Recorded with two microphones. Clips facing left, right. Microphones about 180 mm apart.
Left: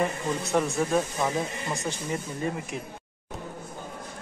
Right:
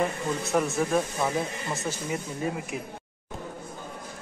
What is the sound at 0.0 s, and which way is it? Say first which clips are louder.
Speech: even; centre (ahead or behind).